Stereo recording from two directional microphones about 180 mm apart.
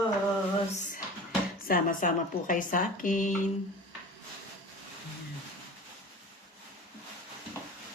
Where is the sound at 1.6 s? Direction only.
50° left (ahead or behind).